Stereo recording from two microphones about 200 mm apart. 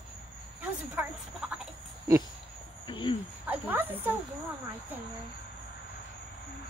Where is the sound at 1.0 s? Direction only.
5° right (ahead or behind).